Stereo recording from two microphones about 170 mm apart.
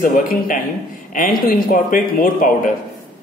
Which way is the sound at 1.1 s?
50° left (ahead or behind).